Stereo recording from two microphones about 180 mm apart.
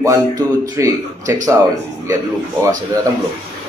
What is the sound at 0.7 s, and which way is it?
Speech, 15° right (ahead or behind).